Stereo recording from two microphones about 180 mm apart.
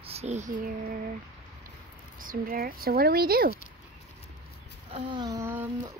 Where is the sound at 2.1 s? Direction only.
50° right (ahead or behind).